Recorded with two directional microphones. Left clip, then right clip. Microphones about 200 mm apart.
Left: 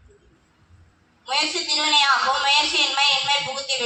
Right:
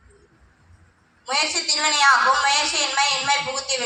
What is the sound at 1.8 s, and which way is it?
A woman's voice, 20° right (ahead or behind).